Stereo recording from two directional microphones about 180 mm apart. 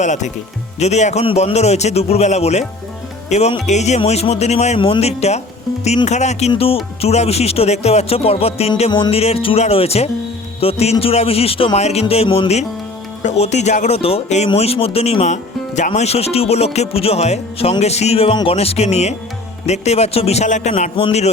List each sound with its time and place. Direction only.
0.0 s speech: 40° left (ahead or behind)